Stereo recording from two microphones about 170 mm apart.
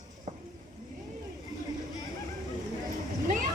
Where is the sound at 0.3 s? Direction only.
40° right (ahead or behind).